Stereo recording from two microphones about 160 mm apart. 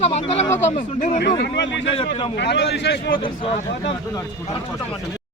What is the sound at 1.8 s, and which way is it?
Speech, 35° left (ahead or behind).